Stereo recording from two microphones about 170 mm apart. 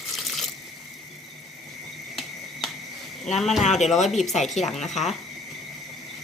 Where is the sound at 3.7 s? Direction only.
45° left (ahead or behind).